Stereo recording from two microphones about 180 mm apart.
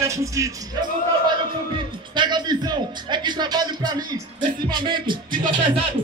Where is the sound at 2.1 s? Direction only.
25° right (ahead or behind).